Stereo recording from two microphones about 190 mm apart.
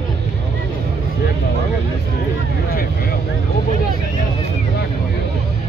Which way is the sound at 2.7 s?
50° left (ahead or behind).